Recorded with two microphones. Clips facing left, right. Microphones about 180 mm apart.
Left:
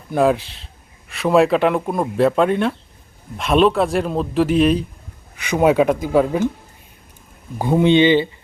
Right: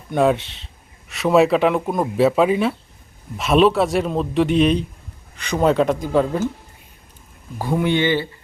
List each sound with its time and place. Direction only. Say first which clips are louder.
0.1 s speech: left 1 dB; centre (ahead or behind)
7.6 s speech: left 5 dB; 20° left (ahead or behind)